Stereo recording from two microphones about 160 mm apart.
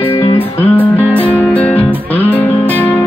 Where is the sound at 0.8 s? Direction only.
10° left (ahead or behind).